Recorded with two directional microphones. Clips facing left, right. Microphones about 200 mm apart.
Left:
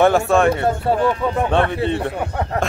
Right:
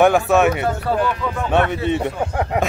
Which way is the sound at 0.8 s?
25° left (ahead or behind).